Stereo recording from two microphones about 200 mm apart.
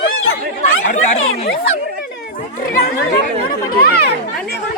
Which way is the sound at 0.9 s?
35° left (ahead or behind).